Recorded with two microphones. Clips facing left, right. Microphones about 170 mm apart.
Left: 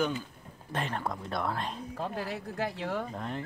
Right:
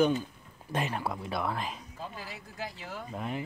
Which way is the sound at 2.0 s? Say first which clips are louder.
Left 7 dB; 60° left (ahead or behind).